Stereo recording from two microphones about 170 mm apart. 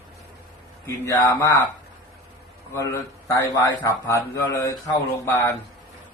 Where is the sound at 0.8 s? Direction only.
15° left (ahead or behind).